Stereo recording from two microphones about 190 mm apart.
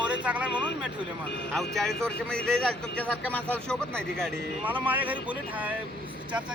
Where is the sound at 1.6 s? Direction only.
Centre (ahead or behind).